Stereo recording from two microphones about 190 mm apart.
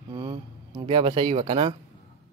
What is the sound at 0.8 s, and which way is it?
Speech, 25° right (ahead or behind).